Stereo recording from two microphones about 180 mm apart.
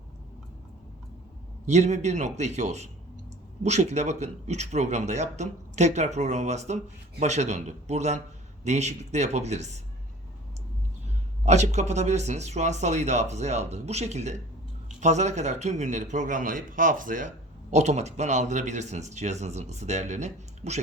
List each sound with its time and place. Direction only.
1.6 s a man's voice: 40° right (ahead or behind)
11.4 s a man's voice: 40° right (ahead or behind)